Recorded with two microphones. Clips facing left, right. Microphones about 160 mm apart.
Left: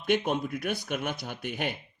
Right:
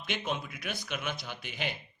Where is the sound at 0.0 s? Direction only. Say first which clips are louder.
Left 8 dB; 50° left (ahead or behind).